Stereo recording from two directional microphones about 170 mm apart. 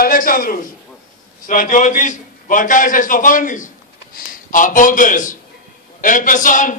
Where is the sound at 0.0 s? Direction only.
55° left (ahead or behind).